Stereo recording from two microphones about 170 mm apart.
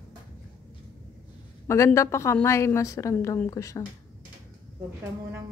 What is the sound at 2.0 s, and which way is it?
A woman's voice, 15° left (ahead or behind).